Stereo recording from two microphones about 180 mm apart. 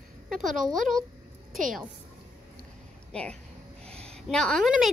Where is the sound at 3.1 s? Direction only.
5° left (ahead or behind).